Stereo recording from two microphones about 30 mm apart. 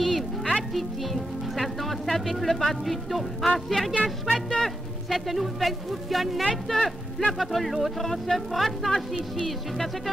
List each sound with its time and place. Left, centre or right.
0.0 s music: centre
0.7 s speech: centre
4.3 s music: centre
5.1 s speech: centre
6.7 s speech: centre
7.3 s speech: centre
8.0 s speech: centre